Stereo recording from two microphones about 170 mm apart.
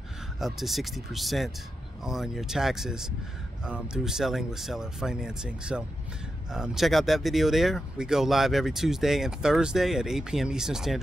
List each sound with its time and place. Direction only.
0.4 s speech: centre (ahead or behind)